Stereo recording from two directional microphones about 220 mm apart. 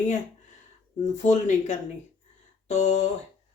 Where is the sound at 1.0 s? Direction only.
35° left (ahead or behind).